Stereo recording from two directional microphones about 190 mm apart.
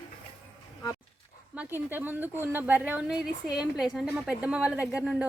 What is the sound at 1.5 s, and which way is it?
A woman's voice, 10° right (ahead or behind).